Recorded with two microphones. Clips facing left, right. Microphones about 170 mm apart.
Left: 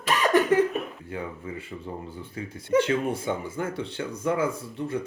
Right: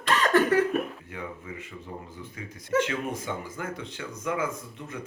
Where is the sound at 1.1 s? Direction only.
30° left (ahead or behind).